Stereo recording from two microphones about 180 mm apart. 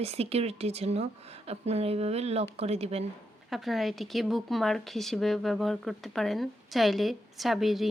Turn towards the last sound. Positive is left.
turn(degrees=0)  # may be behind; listen again after turning